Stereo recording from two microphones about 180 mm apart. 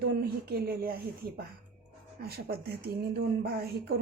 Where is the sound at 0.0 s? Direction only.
60° right (ahead or behind).